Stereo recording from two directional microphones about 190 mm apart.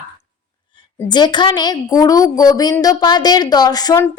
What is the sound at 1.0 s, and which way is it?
A woman's voice, 25° left (ahead or behind).